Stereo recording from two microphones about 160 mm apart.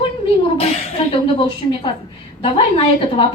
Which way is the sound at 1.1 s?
35° left (ahead or behind).